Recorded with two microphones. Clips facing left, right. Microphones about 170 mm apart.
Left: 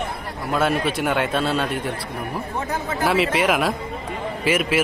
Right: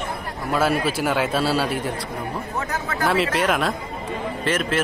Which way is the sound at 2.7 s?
25° left (ahead or behind).